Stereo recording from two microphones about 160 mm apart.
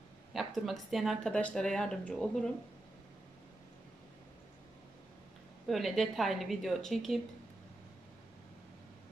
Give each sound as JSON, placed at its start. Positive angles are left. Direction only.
{"t": 0.3, "sound": "speech", "side_deg": 0}
{"t": 5.7, "sound": "speech", "side_deg": 0}